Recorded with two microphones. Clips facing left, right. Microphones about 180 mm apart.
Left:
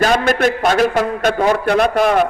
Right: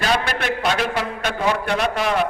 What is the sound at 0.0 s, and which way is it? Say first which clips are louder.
A man's voice: left 8 dB; 45° left (ahead or behind).